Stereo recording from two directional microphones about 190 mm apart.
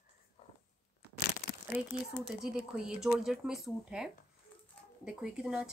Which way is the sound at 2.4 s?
5° right (ahead or behind).